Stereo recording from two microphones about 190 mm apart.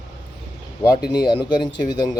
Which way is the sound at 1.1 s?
20° left (ahead or behind).